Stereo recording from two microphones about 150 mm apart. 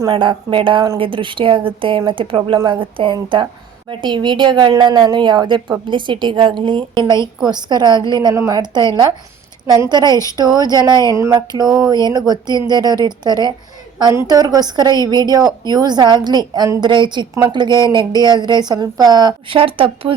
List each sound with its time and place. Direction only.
0.1 s a woman's voice: 35° right (ahead or behind)
9.9 s a woman's voice: 30° right (ahead or behind)